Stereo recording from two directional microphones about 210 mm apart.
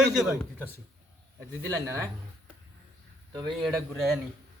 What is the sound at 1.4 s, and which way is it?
Speech, 15° right (ahead or behind).